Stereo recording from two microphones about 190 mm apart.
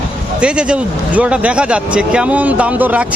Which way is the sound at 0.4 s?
5° right (ahead or behind).